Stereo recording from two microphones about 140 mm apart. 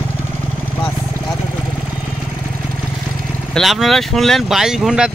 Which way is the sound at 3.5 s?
Centre (ahead or behind).